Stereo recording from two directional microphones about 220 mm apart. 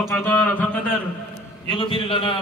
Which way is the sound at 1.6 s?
25° left (ahead or behind).